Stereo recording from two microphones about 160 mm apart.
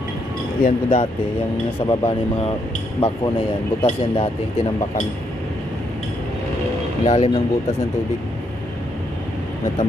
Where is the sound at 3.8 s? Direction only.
40° left (ahead or behind).